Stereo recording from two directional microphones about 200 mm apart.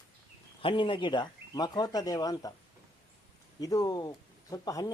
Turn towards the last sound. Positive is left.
turn(degrees=20)  # may be behind; listen again after turning